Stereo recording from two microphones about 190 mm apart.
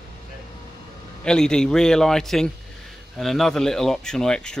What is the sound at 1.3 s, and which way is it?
Speech, 5° left (ahead or behind).